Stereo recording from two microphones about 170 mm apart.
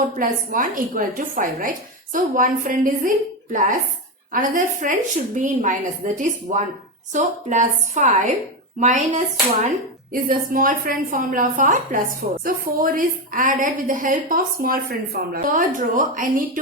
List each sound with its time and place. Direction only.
0.0 s a woman's voice: 50° right (ahead or behind)